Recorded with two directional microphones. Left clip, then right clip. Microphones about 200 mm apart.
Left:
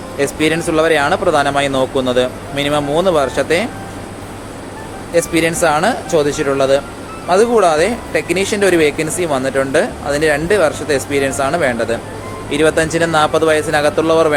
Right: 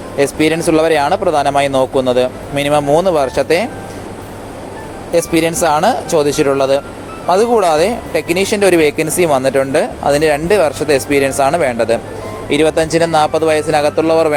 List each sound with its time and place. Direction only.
0.2 s speech: 30° right (ahead or behind)
5.1 s speech: 25° right (ahead or behind)